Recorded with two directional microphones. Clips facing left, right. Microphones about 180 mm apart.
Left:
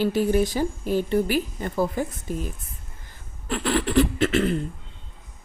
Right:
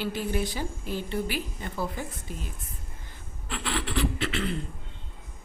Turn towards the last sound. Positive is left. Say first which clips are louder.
# left 8 dB
turn(degrees=45)  # may be behind; listen again after turning